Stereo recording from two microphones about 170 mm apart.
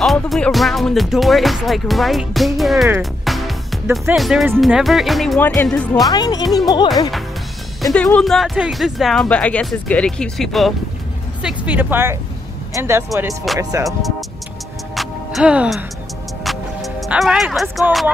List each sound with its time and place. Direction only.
0.0 s speech: centre (ahead or behind)
3.0 s music: centre (ahead or behind)
4.1 s speech: centre (ahead or behind)
6.0 s speech: 25° left (ahead or behind)
7.8 s speech: 5° left (ahead or behind); by 13.8 s 20° right (ahead or behind)
15.0 s music: 5° right (ahead or behind)